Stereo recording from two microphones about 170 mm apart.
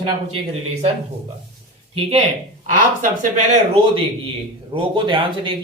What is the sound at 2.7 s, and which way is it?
Speech, 50° right (ahead or behind).